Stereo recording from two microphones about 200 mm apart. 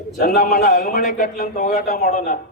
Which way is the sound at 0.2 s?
50° left (ahead or behind).